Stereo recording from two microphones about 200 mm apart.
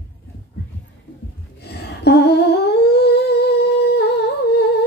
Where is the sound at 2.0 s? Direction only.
55° left (ahead or behind).